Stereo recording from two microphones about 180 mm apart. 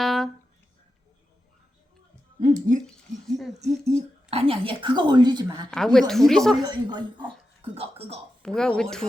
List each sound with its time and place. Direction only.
0.0 s a sound: centre (ahead or behind)
2.4 s speech: 40° right (ahead or behind); by 5.6 s 25° right (ahead or behind)
5.7 s a woman's voice: 5° left (ahead or behind)
6.7 s speech: 25° right (ahead or behind)
8.4 s a woman's voice: 5° left (ahead or behind)